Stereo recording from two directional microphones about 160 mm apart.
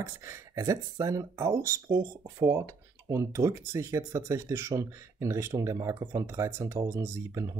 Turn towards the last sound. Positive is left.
turn(degrees=-15)  # may be behind; listen again after turning